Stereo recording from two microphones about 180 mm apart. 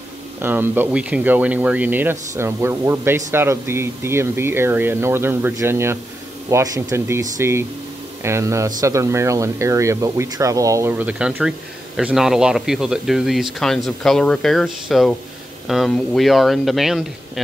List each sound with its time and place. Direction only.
0.4 s speech: 10° right (ahead or behind)